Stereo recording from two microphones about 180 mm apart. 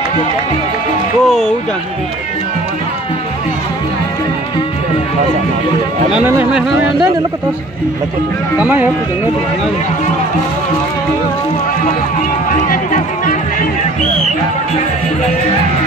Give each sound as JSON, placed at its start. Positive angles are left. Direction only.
{"t": 1.2, "sound": "speech", "side_deg": 0}
{"t": 6.1, "sound": "speech", "side_deg": -5}
{"t": 8.5, "sound": "speech", "side_deg": -10}
{"t": 12.6, "sound": "music", "side_deg": 45}